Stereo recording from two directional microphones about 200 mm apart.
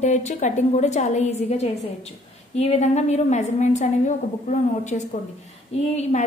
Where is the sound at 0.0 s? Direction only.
35° left (ahead or behind).